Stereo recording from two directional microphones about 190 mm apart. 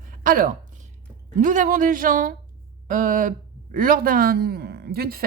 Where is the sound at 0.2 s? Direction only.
45° right (ahead or behind).